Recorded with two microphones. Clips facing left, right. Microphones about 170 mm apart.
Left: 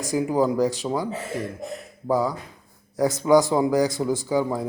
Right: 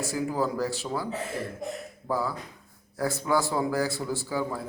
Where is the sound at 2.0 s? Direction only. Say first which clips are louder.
Left 7 dB; 15° left (ahead or behind).